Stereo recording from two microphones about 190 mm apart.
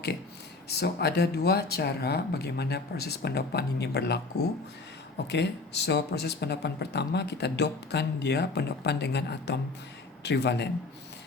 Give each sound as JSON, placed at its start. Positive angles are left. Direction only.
{"t": 0.7, "sound": "speech", "side_deg": 60}